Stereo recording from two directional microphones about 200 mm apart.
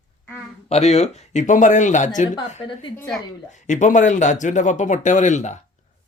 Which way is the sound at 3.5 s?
35° left (ahead or behind).